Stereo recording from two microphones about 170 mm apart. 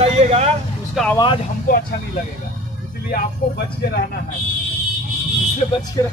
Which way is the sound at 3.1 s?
60° left (ahead or behind).